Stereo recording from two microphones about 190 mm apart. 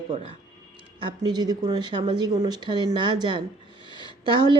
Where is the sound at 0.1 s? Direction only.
30° right (ahead or behind).